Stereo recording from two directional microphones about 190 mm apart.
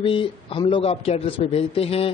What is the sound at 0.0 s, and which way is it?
A man's voice, 30° left (ahead or behind).